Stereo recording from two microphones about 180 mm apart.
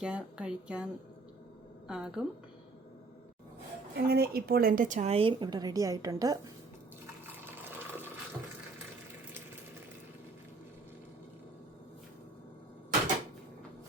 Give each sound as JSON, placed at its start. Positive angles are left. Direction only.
{"t": 0.0, "sound": "speech", "side_deg": -5}
{"t": 1.9, "sound": "a woman's voice", "side_deg": -5}
{"t": 3.9, "sound": "speech", "side_deg": -60}
{"t": 7.4, "sound": "sewing machine", "side_deg": -10}